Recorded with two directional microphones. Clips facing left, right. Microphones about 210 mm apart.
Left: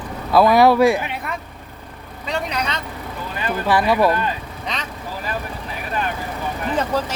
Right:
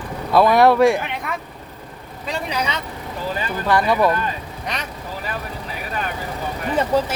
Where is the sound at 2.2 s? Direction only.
10° right (ahead or behind).